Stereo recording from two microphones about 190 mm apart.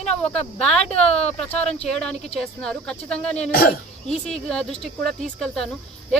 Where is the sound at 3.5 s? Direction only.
50° left (ahead or behind).